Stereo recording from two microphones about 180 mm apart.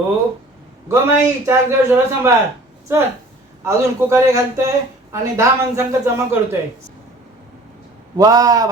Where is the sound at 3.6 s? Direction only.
15° right (ahead or behind).